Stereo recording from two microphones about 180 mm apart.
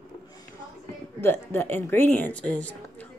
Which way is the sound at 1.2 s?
10° left (ahead or behind).